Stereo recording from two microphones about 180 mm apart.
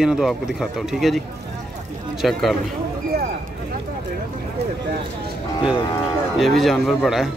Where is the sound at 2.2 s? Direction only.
Centre (ahead or behind).